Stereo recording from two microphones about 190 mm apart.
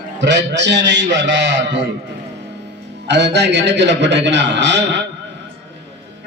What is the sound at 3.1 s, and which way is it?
A man's voice, 65° right (ahead or behind).